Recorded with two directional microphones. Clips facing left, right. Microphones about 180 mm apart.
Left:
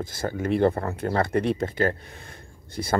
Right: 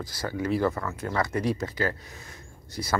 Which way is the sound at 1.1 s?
55° left (ahead or behind).